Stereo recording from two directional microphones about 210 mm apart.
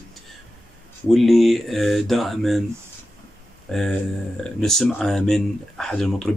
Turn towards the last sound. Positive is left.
turn(degrees=0)  # may be behind; listen again after turning